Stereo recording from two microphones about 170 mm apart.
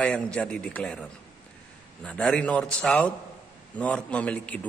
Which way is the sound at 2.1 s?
5° left (ahead or behind).